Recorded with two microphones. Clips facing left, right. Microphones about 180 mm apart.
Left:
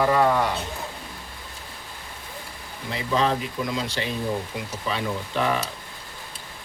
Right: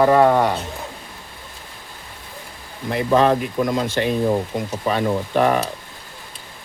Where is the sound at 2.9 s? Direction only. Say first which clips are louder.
Right 7 dB; 55° right (ahead or behind).